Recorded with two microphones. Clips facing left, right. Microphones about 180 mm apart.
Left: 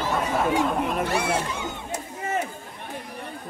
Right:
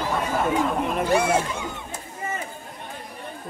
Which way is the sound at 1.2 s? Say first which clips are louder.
Right 6 dB; 50° right (ahead or behind).